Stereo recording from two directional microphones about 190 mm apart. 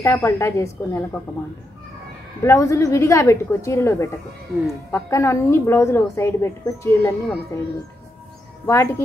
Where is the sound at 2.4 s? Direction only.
15° left (ahead or behind).